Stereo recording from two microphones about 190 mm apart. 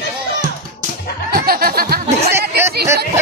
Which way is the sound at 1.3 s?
50° right (ahead or behind).